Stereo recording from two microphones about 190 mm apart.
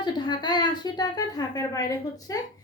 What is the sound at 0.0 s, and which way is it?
A woman's voice, 20° left (ahead or behind).